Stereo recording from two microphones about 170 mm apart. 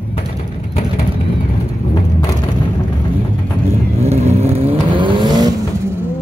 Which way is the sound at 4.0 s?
40° right (ahead or behind).